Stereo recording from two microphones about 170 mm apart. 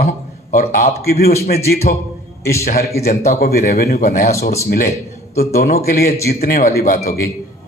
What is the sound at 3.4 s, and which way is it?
Speech, 65° left (ahead or behind).